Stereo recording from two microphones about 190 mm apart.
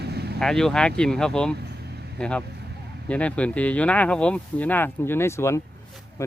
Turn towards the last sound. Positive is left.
turn(degrees=15)  # may be behind; listen again after turning